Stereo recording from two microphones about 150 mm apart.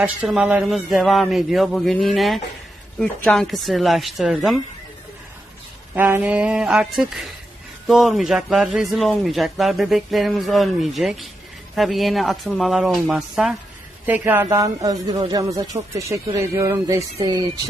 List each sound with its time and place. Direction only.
0.0 s a man's voice: 5° right (ahead or behind)
5.9 s a sound: 15° right (ahead or behind)
7.9 s a man's voice: centre (ahead or behind); by 17.4 s 25° right (ahead or behind)